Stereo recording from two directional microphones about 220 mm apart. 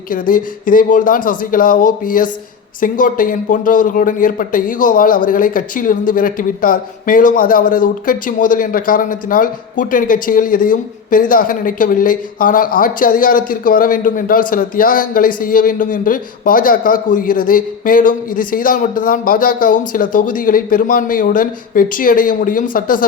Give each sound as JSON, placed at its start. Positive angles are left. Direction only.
{"t": 0.1, "sound": "a man's voice", "side_deg": 40}